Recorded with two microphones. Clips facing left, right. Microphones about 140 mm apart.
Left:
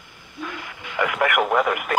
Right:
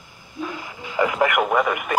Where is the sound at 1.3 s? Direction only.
Centre (ahead or behind).